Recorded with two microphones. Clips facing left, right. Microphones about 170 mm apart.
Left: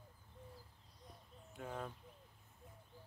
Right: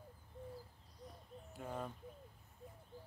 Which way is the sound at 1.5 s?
5° right (ahead or behind).